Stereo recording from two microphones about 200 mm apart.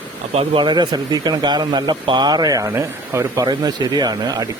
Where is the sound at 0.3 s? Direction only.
25° right (ahead or behind).